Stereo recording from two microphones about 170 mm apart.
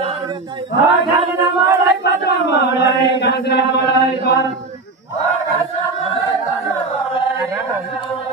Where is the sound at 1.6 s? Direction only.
85° left.